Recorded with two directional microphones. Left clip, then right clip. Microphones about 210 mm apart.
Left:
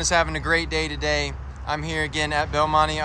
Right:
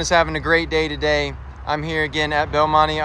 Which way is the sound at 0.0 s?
10° left (ahead or behind).